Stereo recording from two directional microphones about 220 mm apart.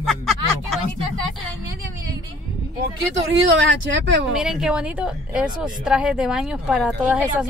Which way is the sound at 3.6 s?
55° right (ahead or behind).